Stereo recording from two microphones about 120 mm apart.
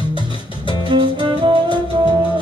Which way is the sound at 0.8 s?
40° right (ahead or behind).